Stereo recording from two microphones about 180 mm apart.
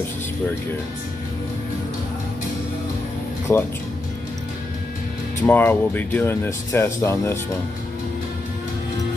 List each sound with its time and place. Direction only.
3.5 s speech: 15° left (ahead or behind)
5.5 s speech: 10° left (ahead or behind)